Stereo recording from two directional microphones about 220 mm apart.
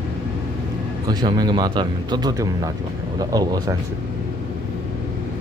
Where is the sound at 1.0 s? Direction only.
20° right (ahead or behind).